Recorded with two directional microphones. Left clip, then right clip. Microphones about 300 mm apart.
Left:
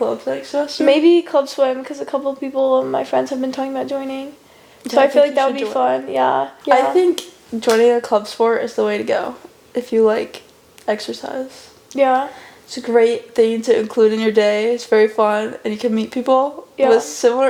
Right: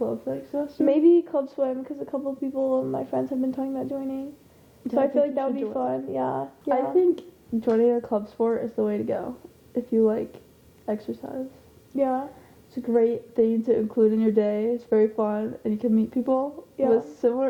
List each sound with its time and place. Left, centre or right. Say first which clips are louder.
0.0 s speech: left 9 dB; centre
2.6 s speech: left 9 dB; left
2.8 s speech: left 9 dB; centre
16.4 s speech: left 10 dB; centre
16.7 s speech: left 8 dB; centre